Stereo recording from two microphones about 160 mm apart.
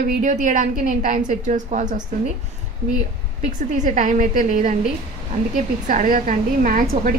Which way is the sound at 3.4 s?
50° right (ahead or behind).